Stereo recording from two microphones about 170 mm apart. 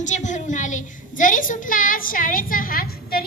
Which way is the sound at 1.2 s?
50° left (ahead or behind).